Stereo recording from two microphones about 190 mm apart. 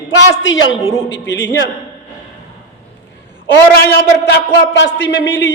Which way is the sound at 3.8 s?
60° left (ahead or behind).